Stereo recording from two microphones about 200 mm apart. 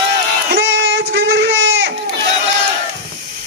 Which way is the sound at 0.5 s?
55° right (ahead or behind).